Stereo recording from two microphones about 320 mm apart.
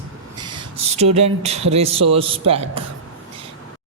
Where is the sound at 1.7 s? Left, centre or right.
Centre.